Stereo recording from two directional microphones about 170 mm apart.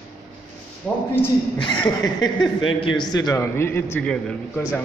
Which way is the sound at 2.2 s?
25° left (ahead or behind).